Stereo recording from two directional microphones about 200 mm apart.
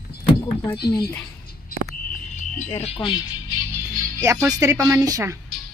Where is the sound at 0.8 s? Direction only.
50° left (ahead or behind).